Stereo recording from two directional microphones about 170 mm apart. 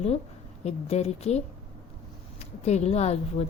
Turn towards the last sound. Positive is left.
turn(degrees=40)  # may be behind; listen again after turning